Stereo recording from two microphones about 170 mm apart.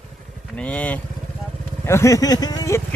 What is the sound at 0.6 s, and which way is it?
Speech, 5° left (ahead or behind).